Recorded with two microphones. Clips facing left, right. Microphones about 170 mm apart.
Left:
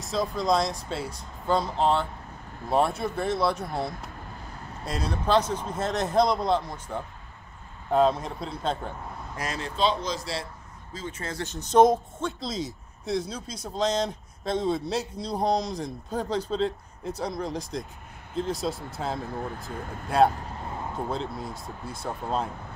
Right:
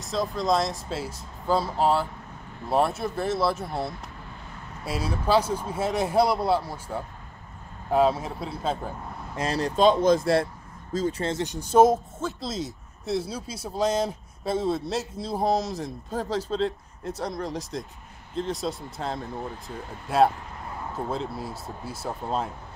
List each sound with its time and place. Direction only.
0.0 s speech: centre (ahead or behind)
9.4 s speech: 35° right (ahead or behind)
9.8 s speech: 50° right (ahead or behind)
10.9 s speech: 40° right (ahead or behind)
11.3 s speech: 15° right (ahead or behind)